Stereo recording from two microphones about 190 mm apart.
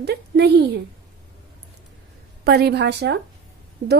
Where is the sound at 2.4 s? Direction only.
60° right (ahead or behind).